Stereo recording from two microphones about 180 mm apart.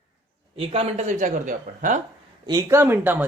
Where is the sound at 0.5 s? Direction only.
35° right (ahead or behind).